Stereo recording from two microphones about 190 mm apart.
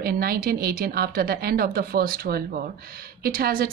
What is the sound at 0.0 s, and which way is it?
Speech, 55° right (ahead or behind).